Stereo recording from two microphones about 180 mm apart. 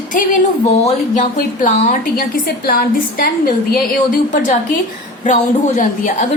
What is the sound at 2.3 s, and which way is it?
A woman's voice, 55° left (ahead or behind).